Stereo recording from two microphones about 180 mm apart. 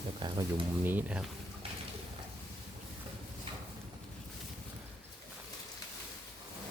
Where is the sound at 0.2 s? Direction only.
25° right (ahead or behind).